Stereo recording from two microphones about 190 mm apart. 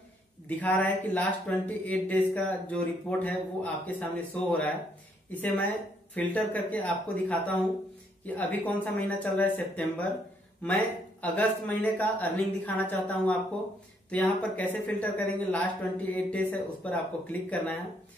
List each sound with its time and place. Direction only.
0.5 s speech: 10° left (ahead or behind)